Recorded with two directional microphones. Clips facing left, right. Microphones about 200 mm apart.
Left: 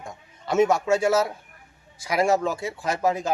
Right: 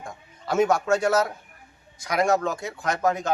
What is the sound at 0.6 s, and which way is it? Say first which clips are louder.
Speech: left 1 dB; 5° left (ahead or behind).